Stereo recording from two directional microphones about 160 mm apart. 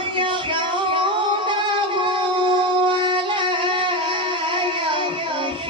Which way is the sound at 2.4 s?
30° right (ahead or behind).